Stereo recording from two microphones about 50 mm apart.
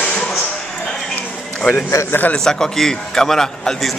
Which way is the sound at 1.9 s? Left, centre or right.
Left.